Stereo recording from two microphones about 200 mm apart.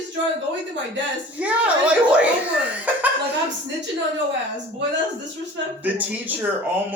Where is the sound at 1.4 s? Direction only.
5° right (ahead or behind).